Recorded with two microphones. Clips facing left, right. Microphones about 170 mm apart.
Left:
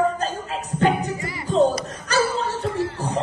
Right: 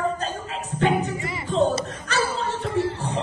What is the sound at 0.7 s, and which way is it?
Music, 40° left (ahead or behind).